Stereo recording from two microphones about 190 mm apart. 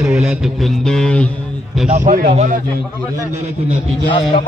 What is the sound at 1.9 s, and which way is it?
Speech, 45° right (ahead or behind).